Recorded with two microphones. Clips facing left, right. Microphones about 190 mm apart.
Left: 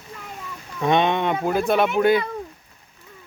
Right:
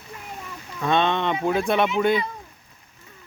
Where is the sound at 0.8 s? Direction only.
15° left (ahead or behind).